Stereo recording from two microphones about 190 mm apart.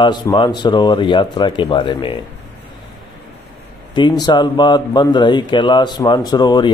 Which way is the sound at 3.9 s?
25° left (ahead or behind).